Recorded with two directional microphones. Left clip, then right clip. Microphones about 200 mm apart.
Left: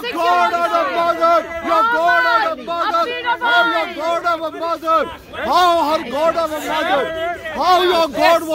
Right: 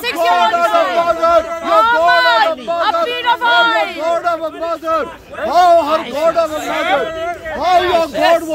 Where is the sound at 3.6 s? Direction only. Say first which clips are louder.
Right 4 dB; 55° right (ahead or behind).